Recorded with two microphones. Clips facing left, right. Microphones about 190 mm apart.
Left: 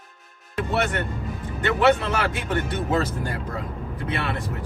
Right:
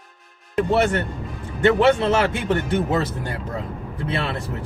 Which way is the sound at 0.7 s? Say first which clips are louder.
Right 4 dB; 30° right (ahead or behind).